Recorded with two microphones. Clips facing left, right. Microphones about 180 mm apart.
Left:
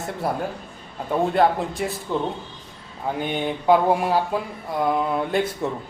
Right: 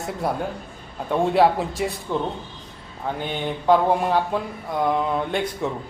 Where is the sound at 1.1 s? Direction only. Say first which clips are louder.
Right 1 dB; centre (ahead or behind).